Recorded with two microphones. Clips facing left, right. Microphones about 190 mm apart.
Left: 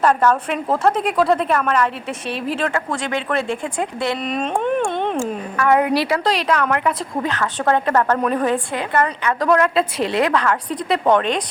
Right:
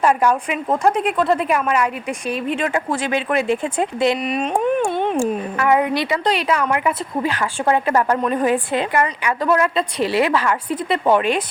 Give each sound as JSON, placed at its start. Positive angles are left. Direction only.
{"t": 0.0, "sound": "a woman's voice", "side_deg": -10}
{"t": 8.7, "sound": "a woman's voice", "side_deg": -20}
{"t": 9.0, "sound": "a woman's voice", "side_deg": -10}